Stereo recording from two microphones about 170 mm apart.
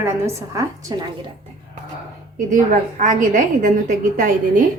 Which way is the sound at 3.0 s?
50° right (ahead or behind).